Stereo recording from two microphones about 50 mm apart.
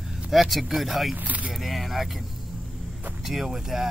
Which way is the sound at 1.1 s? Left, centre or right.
Right.